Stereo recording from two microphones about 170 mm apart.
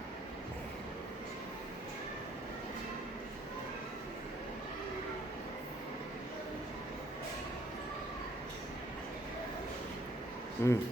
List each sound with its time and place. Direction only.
10.6 s speech: 15° left (ahead or behind)